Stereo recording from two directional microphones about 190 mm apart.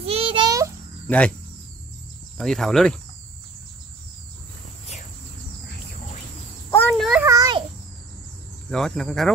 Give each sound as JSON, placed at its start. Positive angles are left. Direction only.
{"t": 0.0, "sound": "a sound", "side_deg": -30}
{"t": 1.0, "sound": "speech", "side_deg": 5}
{"t": 2.3, "sound": "speech", "side_deg": 0}
{"t": 6.7, "sound": "insect", "side_deg": 10}
{"t": 7.0, "sound": "a sound", "side_deg": 0}
{"t": 7.2, "sound": "babbling", "side_deg": -20}
{"t": 8.6, "sound": "speech", "side_deg": 5}